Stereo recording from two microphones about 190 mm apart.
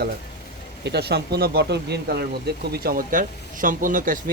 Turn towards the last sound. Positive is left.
turn(degrees=-45)  # may be behind; listen again after turning